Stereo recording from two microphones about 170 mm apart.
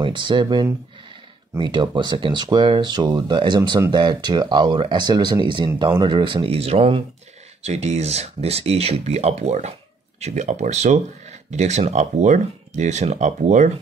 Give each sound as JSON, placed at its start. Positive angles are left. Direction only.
{"t": 0.0, "sound": "speech", "side_deg": -30}